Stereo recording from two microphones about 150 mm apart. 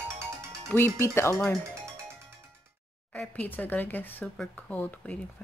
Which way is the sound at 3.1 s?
10° left (ahead or behind).